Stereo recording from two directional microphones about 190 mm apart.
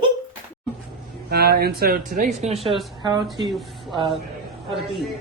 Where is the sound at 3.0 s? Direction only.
25° right (ahead or behind).